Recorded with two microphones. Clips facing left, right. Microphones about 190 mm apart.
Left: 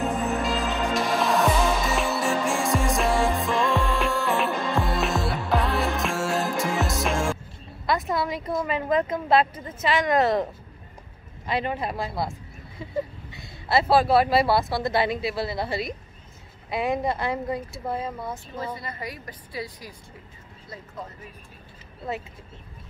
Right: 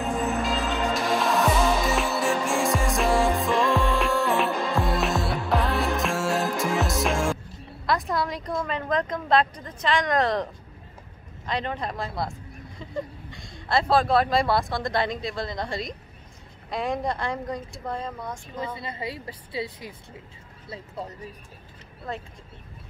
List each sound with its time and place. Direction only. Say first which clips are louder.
0.9 s music: left 2 dB; centre (ahead or behind)
7.8 s speech: left 1 dB; centre (ahead or behind)
18.8 s a woman's voice: right 2 dB; 25° right (ahead or behind)